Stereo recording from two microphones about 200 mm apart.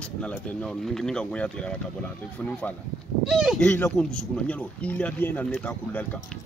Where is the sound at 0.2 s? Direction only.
5° left (ahead or behind).